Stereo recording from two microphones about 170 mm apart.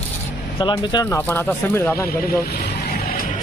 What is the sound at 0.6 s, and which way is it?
Speech, 30° left (ahead or behind).